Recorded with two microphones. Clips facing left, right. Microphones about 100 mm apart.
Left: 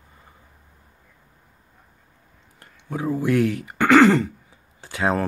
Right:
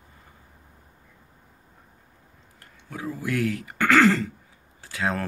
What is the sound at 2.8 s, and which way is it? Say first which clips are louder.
Speech: left 8 dB; 30° left (ahead or behind).